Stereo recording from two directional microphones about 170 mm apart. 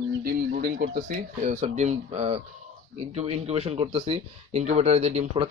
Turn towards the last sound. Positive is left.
turn(degrees=-40)  # may be behind; listen again after turning